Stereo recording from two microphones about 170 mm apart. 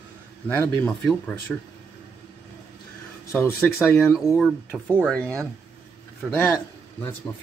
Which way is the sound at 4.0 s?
5° right (ahead or behind).